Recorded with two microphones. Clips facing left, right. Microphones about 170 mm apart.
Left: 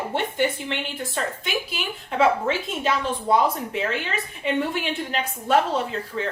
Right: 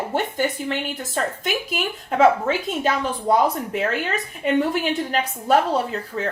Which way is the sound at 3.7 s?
45° right (ahead or behind).